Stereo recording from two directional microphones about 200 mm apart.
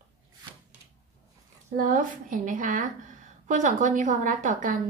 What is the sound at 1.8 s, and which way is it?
A woman's voice, 40° right (ahead or behind).